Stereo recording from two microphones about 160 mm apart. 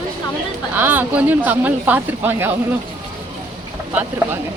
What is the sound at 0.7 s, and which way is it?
Speech, 10° right (ahead or behind).